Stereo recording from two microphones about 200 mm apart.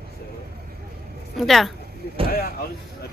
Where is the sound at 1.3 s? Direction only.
Centre (ahead or behind).